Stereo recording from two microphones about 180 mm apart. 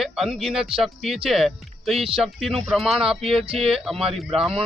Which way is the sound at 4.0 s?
30° right (ahead or behind).